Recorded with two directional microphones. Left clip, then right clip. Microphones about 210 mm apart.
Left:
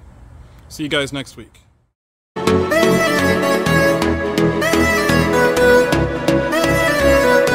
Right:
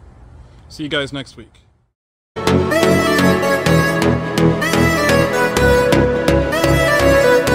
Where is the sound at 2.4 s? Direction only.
Centre (ahead or behind).